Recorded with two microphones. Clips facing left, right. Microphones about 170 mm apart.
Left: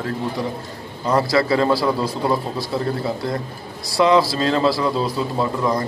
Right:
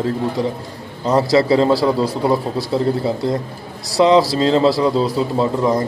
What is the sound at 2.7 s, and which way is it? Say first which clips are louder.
Speech: right 5 dB; 20° right (ahead or behind).